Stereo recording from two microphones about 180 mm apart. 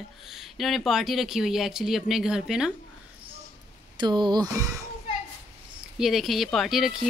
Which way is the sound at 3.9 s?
25° right (ahead or behind).